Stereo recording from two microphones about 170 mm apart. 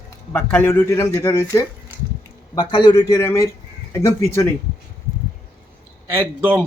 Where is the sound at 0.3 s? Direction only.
15° left (ahead or behind).